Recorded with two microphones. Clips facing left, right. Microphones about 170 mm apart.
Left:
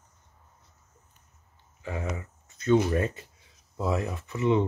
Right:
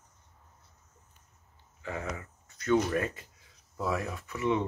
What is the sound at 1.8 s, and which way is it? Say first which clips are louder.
Speech: left 3 dB; 20° left (ahead or behind).